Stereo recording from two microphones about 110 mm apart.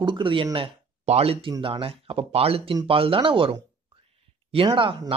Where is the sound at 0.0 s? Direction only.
50° right (ahead or behind).